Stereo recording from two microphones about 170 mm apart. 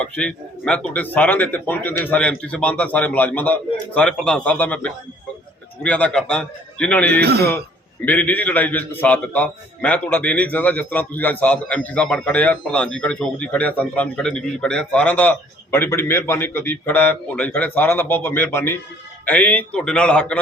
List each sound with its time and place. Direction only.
0.0 s a man's voice: 5° left (ahead or behind)
7.2 s a man's voice: 70° right (ahead or behind)
8.0 s a man's voice: 10° left (ahead or behind)